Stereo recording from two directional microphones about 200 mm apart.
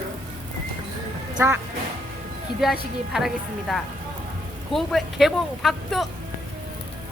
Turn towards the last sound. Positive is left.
turn(degrees=0)  # may be behind; listen again after turning